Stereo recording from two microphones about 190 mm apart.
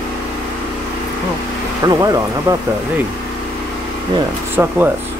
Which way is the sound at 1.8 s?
20° right (ahead or behind).